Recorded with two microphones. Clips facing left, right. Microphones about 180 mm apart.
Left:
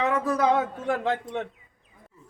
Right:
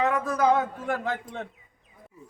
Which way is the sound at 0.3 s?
25° left (ahead or behind).